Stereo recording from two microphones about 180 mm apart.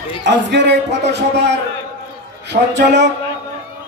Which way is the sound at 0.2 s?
75° right (ahead or behind).